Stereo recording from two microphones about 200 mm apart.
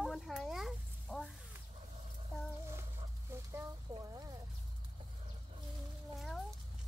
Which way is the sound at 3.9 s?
20° right (ahead or behind).